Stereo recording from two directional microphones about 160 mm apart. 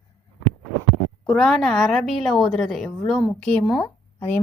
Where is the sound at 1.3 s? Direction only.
Centre (ahead or behind).